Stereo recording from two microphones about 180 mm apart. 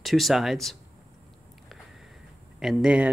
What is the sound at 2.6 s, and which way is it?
Speech, 5° right (ahead or behind).